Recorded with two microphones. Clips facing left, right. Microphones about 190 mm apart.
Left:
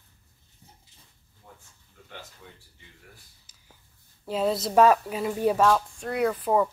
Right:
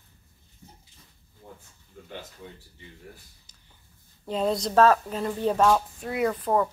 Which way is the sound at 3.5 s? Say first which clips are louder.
Right 3 dB; 5° left (ahead or behind).